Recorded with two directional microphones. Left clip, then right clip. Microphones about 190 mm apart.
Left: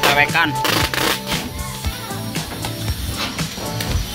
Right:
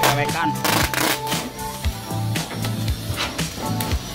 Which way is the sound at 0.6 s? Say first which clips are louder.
Left 2 dB; 55° right (ahead or behind).